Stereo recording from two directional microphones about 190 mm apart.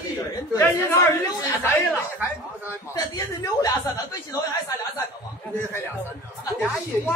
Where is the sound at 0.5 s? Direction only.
10° left (ahead or behind).